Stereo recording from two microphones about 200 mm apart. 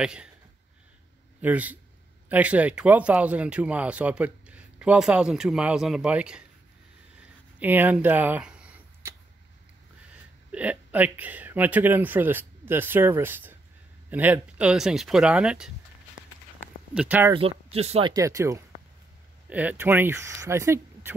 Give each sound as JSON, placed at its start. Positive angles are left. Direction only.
{"t": 0.0, "sound": "speech", "side_deg": -5}
{"t": 1.4, "sound": "speech", "side_deg": -10}
{"t": 7.5, "sound": "a sound", "side_deg": -10}
{"t": 10.5, "sound": "speech", "side_deg": -5}
{"t": 16.9, "sound": "speech", "side_deg": -5}
{"t": 17.3, "sound": "speech", "side_deg": -30}
{"t": 18.1, "sound": "speech", "side_deg": -15}